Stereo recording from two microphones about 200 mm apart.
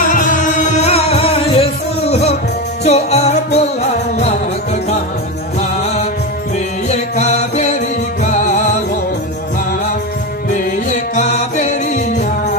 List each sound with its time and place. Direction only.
0.1 s music: 40° left (ahead or behind)
6.9 s music: 35° left (ahead or behind)
10.5 s music: 40° left (ahead or behind)